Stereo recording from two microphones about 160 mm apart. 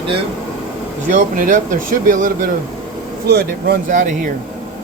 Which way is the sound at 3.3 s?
90° right.